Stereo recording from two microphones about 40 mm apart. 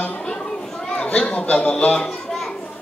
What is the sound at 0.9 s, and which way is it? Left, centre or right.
A man's voice, left.